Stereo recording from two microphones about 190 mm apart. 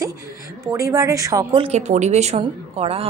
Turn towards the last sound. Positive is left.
turn(degrees=-30)  # may be behind; listen again after turning